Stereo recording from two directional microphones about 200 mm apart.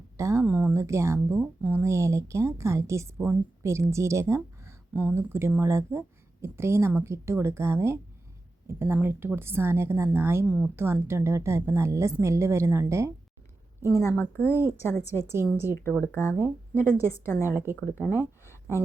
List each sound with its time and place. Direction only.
0.2 s speech: 15° right (ahead or behind)
13.8 s a woman's voice: 15° left (ahead or behind)
15.2 s speech: 15° right (ahead or behind)
15.7 s a woman's voice: 10° left (ahead or behind)